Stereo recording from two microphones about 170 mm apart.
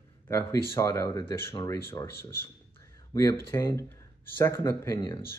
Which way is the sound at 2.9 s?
20° left (ahead or behind).